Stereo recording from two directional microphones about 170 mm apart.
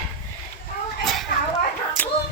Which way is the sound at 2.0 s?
10° left (ahead or behind).